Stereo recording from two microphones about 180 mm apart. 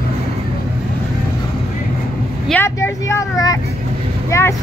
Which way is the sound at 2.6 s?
15° left (ahead or behind).